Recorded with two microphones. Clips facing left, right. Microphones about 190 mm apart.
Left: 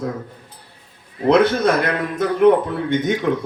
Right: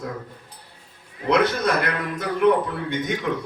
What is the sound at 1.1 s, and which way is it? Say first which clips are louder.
Speech: left 6 dB; 30° left (ahead or behind).